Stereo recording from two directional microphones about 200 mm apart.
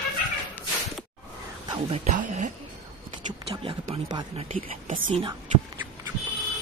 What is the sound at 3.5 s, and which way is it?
Speech, 25° right (ahead or behind).